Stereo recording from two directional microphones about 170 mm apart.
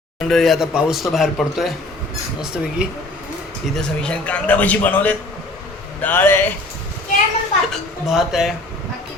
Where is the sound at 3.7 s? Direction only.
5° left (ahead or behind).